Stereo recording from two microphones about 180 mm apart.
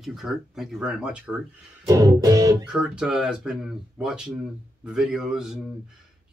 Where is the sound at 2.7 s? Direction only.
5° right (ahead or behind).